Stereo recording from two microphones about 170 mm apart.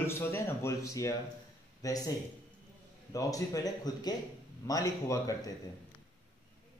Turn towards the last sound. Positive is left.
turn(degrees=20)  # may be behind; listen again after turning